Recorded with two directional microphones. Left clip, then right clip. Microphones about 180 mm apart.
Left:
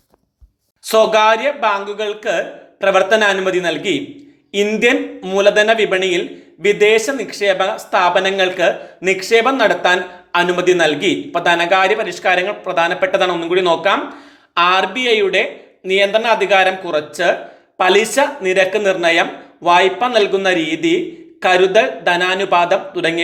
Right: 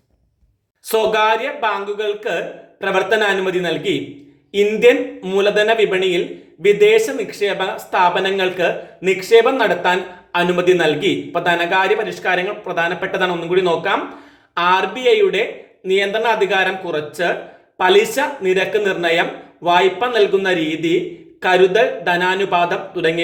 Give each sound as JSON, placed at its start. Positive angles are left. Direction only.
{"t": 0.9, "sound": "speech", "side_deg": 25}